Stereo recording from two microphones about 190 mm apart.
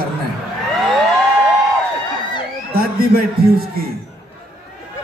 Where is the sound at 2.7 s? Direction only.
50° right (ahead or behind).